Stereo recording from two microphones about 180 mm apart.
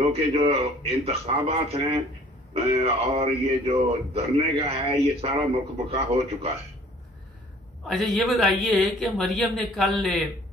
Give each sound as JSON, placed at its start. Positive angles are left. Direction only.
{"t": 0.1, "sound": "speech", "side_deg": -35}
{"t": 7.8, "sound": "a man's voice", "side_deg": 0}